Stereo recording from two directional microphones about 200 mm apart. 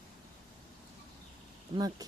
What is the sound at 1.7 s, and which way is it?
Speech, 25° right (ahead or behind).